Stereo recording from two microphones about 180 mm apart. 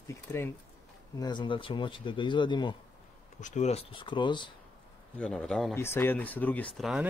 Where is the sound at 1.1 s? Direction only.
25° left (ahead or behind).